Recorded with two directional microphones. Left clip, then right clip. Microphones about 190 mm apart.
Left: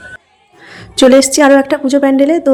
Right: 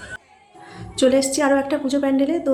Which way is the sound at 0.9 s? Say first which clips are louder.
Left 10 dB; 45° left (ahead or behind).